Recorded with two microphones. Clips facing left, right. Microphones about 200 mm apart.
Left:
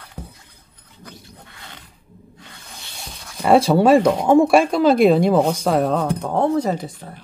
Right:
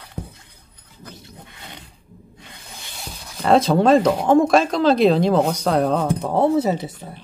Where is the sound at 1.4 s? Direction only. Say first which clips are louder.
Right 2 dB; 20° right (ahead or behind).